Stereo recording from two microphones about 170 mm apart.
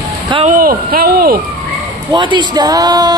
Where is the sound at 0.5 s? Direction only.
55° right (ahead or behind).